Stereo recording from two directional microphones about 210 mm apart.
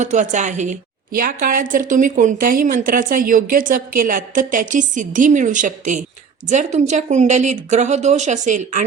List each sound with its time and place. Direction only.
0.0 s a woman's voice: 35° right (ahead or behind)